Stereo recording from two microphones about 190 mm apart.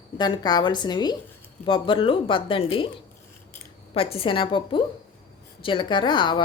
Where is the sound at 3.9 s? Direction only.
30° left (ahead or behind).